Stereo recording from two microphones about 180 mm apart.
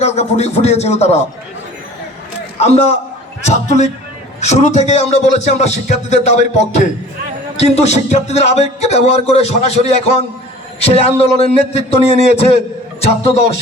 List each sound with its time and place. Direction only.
0.0 s speech: 35° left (ahead or behind)
2.6 s a man's voice: 35° left (ahead or behind)